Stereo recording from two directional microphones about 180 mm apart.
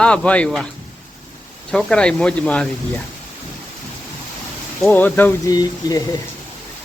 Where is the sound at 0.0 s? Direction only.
5° left (ahead or behind).